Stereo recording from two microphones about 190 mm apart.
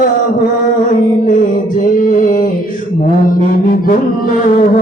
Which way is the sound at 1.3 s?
45° left (ahead or behind).